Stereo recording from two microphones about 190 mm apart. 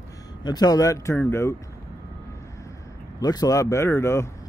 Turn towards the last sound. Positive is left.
turn(degrees=15)  # may be behind; listen again after turning